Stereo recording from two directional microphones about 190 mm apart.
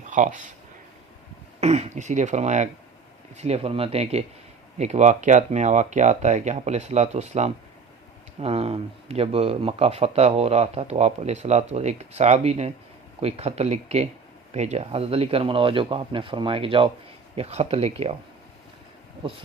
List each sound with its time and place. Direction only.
0.0 s speech: 40° right (ahead or behind)
1.6 s a man's voice: 35° right (ahead or behind)